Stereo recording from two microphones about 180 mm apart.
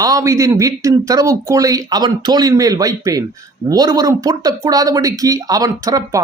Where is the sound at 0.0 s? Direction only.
20° right (ahead or behind).